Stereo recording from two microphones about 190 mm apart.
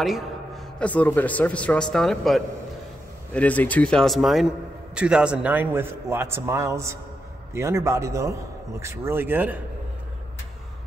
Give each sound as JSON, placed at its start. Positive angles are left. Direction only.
{"t": 0.7, "sound": "a man's voice", "side_deg": 5}